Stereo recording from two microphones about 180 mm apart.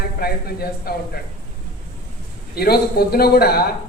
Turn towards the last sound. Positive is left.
turn(degrees=60)  # may be behind; listen again after turning